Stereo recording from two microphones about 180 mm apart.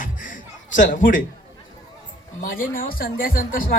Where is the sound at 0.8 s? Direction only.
50° left (ahead or behind).